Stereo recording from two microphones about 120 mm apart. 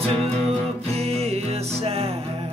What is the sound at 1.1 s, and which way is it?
Music, 60° right (ahead or behind).